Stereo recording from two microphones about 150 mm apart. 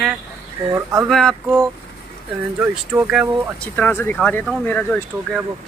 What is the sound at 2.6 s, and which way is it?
Speech, 10° right (ahead or behind).